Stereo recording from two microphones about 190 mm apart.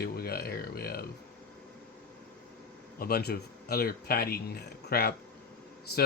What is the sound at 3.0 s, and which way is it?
Speech, 50° left (ahead or behind).